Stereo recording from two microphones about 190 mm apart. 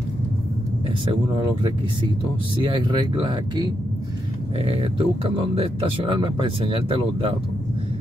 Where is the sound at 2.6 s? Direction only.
25° right (ahead or behind).